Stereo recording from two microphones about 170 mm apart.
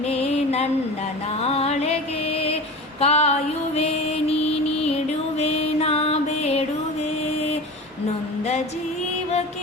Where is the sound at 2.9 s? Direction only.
40° left (ahead or behind).